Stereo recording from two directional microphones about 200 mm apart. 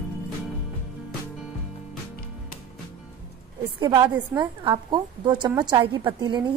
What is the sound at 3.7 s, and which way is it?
A woman's voice, 20° right (ahead or behind).